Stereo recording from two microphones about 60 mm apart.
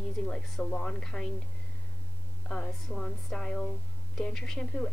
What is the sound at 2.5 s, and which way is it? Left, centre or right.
A woman's voice, centre.